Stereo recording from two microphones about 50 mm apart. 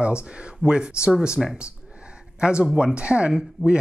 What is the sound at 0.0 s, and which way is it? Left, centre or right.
Speech, right.